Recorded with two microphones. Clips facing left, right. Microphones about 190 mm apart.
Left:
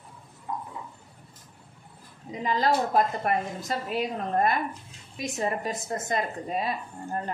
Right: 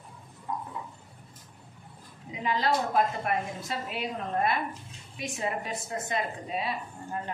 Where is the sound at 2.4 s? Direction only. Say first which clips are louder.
Left 3 dB; 45° left (ahead or behind).